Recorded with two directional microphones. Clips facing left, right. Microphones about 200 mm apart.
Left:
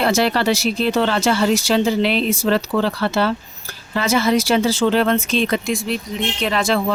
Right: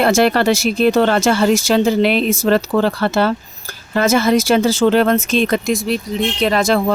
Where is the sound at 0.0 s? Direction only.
50° right (ahead or behind).